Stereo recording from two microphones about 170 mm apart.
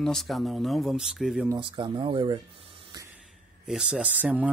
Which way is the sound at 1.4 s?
25° right (ahead or behind).